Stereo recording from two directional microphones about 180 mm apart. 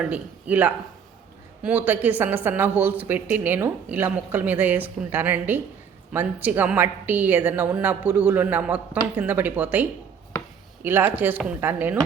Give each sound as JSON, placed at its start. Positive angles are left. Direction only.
{"t": 0.0, "sound": "speech", "side_deg": -10}
{"t": 10.8, "sound": "speech", "side_deg": -10}